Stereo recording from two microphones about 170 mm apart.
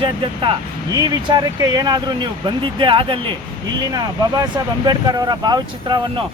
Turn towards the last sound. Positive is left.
turn(degrees=-25)  # may be behind; listen again after turning